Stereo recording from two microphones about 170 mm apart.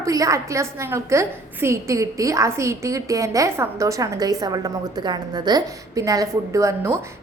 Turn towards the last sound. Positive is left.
turn(degrees=-15)  # may be behind; listen again after turning